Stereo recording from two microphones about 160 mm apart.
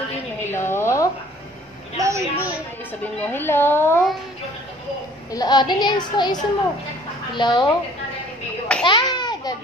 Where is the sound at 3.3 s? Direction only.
15° left (ahead or behind).